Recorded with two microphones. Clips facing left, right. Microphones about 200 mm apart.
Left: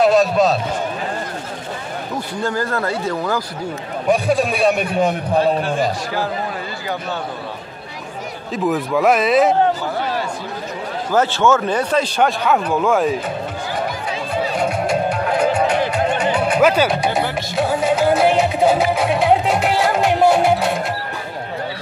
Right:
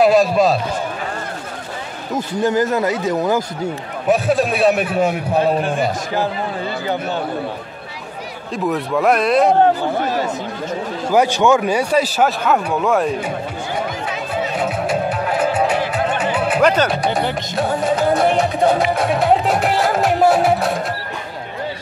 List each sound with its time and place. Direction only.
0.0 s a man's voice: centre (ahead or behind)
2.3 s speech: 20° right (ahead or behind)
4.1 s a man's voice: centre (ahead or behind)
8.6 s a man's voice: centre (ahead or behind)
11.1 s speech: 15° right (ahead or behind)
14.6 s music: 5° right (ahead or behind)
16.6 s a man's voice: 5° left (ahead or behind)
17.6 s music: centre (ahead or behind)